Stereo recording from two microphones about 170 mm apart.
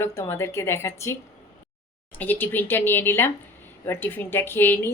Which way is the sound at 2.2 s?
10° left (ahead or behind).